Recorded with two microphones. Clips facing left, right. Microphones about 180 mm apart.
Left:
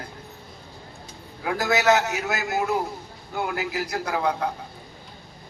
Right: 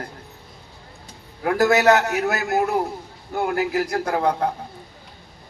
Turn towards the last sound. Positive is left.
turn(degrees=-50)  # may be behind; listen again after turning